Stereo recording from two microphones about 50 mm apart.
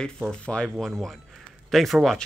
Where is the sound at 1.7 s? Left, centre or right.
Centre.